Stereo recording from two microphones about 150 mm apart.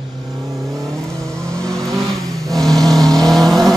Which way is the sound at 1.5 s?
5° left (ahead or behind).